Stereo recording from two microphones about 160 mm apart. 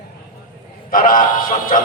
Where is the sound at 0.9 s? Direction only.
60° left (ahead or behind).